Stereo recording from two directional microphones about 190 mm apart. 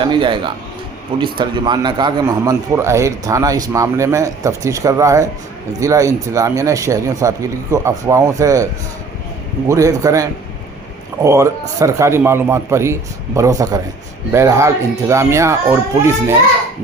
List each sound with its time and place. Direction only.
0.0 s a man's voice: 25° right (ahead or behind)
9.6 s a man's voice: 15° right (ahead or behind)